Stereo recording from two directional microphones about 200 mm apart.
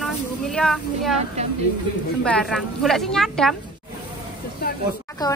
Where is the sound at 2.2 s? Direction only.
5° left (ahead or behind).